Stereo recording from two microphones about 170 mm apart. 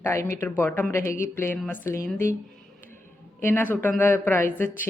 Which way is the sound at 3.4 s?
10° left (ahead or behind).